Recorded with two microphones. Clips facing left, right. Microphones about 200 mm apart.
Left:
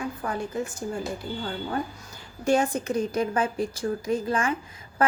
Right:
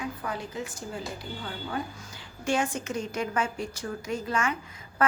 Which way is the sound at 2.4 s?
40° left (ahead or behind).